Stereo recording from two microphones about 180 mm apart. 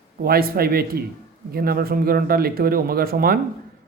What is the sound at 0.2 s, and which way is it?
Speech, 55° right (ahead or behind).